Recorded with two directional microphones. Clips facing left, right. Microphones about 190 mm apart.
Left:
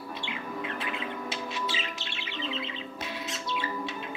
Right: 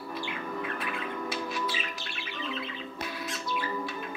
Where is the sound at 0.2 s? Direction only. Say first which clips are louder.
Right 1 dB; 20° left (ahead or behind).